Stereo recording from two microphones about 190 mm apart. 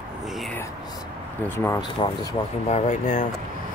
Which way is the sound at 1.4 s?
10° left (ahead or behind).